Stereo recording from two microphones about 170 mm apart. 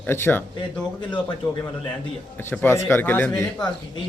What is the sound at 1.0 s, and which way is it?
Speech, 25° left (ahead or behind).